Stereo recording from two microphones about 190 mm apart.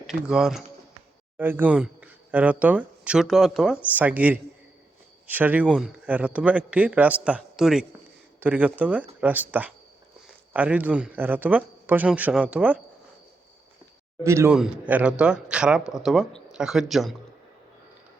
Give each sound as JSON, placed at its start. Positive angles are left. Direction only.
{"t": 0.1, "sound": "a man's voice", "side_deg": 0}
{"t": 14.3, "sound": "a man's voice", "side_deg": -15}